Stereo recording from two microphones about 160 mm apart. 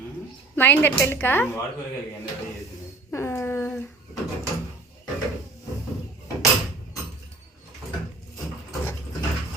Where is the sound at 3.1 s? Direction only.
15° left (ahead or behind).